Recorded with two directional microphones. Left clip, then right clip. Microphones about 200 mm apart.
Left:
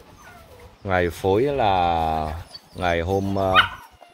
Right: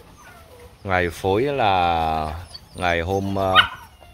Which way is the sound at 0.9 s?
15° left (ahead or behind).